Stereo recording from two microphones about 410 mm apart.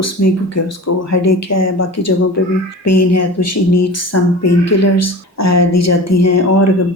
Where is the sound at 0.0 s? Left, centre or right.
Left.